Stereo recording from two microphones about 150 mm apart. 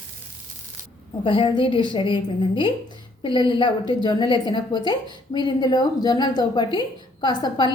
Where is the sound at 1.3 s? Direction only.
35° left (ahead or behind).